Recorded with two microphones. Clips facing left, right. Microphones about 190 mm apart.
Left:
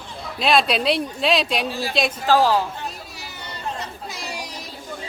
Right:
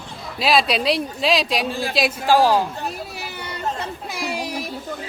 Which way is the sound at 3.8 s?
55° right (ahead or behind).